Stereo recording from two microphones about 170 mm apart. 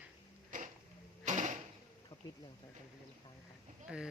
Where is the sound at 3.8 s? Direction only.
5° right (ahead or behind).